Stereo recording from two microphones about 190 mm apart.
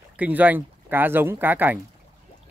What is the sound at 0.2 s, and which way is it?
Speech, 10° right (ahead or behind).